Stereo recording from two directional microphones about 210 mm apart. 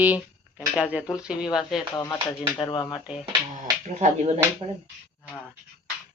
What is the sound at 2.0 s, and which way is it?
Speech, 20° left (ahead or behind).